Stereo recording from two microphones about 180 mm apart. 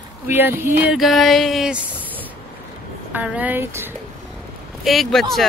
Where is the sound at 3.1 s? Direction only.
10° right (ahead or behind).